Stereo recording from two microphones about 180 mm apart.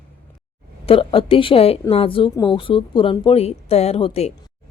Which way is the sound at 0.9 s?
30° left (ahead or behind).